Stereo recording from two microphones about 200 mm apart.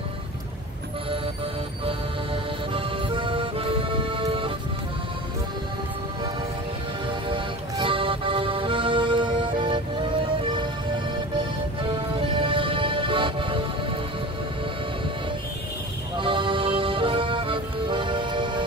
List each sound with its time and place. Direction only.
2.7 s music: 25° right (ahead or behind)
7.1 s music: 25° right (ahead or behind)
11.9 s music: 25° right (ahead or behind)
16.2 s music: 25° right (ahead or behind)